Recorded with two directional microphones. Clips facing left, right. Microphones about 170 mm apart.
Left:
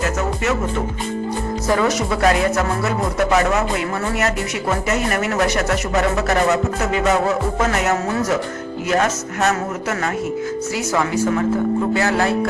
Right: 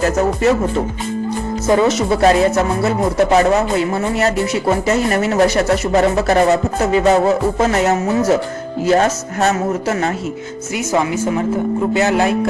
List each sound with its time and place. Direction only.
0.0 s speech: 35° right (ahead or behind)
1.6 s speech: 25° right (ahead or behind)
11.9 s speech: 20° right (ahead or behind)